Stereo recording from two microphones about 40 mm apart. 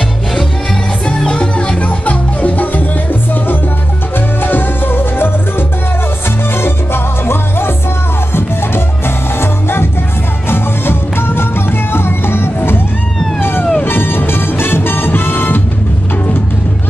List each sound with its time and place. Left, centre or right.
1.0 s music: left
1.8 s music: left
4.4 s music: left
13.4 s music: left